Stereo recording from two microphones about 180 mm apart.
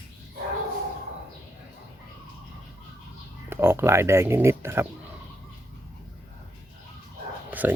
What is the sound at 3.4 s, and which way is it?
Speech, 10° right (ahead or behind).